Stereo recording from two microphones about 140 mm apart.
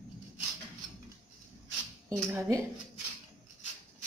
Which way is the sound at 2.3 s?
20° right (ahead or behind).